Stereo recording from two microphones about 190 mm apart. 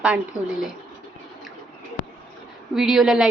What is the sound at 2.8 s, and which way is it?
Speech, centre (ahead or behind).